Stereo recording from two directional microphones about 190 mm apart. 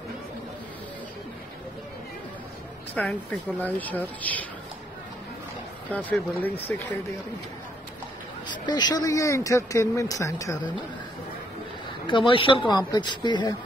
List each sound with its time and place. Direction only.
2.9 s speech: 5° left (ahead or behind)
6.0 s speech: 10° left (ahead or behind)
8.5 s speech: 20° left (ahead or behind)
12.1 s speech: 25° left (ahead or behind)